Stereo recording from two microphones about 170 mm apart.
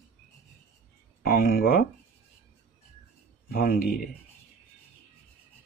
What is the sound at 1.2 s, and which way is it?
Speech, 60° left (ahead or behind).